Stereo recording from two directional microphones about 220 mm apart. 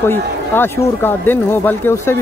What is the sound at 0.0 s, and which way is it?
Speech, 10° left (ahead or behind).